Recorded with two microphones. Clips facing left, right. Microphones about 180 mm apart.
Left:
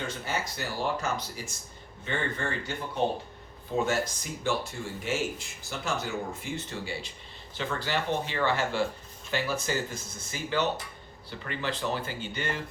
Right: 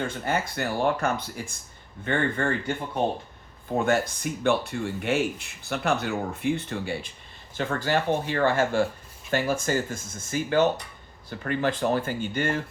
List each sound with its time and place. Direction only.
0.3 s speech: 55° right (ahead or behind)
3.8 s speech: 60° right (ahead or behind)